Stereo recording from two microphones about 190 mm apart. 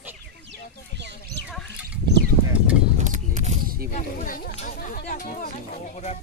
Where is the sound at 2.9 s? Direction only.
40° right (ahead or behind).